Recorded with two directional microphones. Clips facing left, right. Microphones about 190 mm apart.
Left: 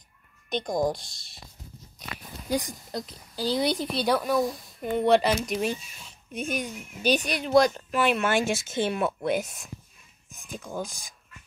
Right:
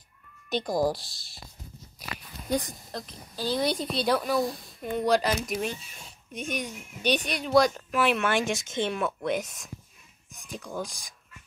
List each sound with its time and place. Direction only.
0.5 s speech: 5° right (ahead or behind)
2.6 s speech: 15° left (ahead or behind)